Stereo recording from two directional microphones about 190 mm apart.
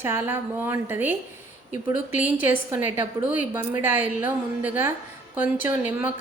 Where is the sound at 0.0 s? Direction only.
10° right (ahead or behind).